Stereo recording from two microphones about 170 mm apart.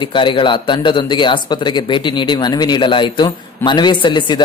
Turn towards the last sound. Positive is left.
turn(degrees=30)  # may be behind; listen again after turning